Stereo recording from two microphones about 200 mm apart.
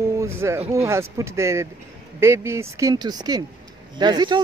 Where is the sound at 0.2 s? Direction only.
15° right (ahead or behind).